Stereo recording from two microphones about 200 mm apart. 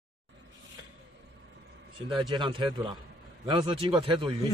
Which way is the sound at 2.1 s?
25° right (ahead or behind).